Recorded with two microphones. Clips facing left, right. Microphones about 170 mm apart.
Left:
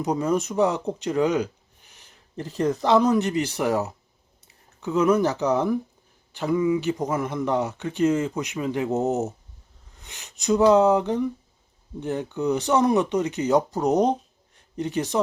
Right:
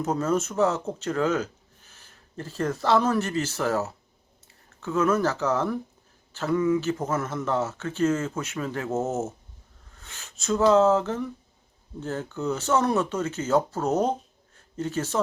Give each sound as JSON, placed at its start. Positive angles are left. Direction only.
{"t": 0.0, "sound": "speech", "side_deg": 15}